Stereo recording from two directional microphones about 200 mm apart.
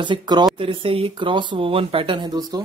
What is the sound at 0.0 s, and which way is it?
Speech, 20° right (ahead or behind).